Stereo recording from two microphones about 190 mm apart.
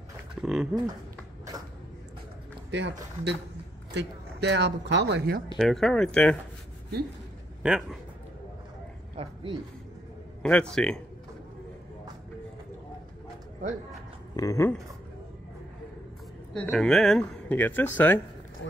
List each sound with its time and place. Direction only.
0.4 s speech: centre (ahead or behind)
1.5 s a sound: 20° right (ahead or behind)
2.7 s speech: 65° right (ahead or behind)
5.6 s speech: centre (ahead or behind)
7.6 s speech: 5° right (ahead or behind)
9.1 s speech: 30° right (ahead or behind)
10.4 s speech: 5° left (ahead or behind)
14.3 s speech: 15° left (ahead or behind)
16.5 s speech: 5° left (ahead or behind)
18.6 s speech: 70° left (ahead or behind)